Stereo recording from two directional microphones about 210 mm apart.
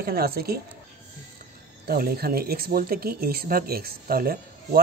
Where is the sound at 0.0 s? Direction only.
45° right (ahead or behind).